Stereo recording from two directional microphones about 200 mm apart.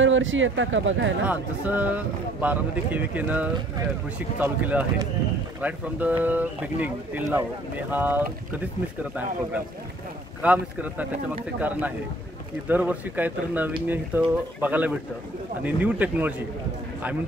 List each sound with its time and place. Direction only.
0.0 s speech: 75° right (ahead or behind)
1.2 s speech: 10° right (ahead or behind)
10.4 s speech: 10° right (ahead or behind)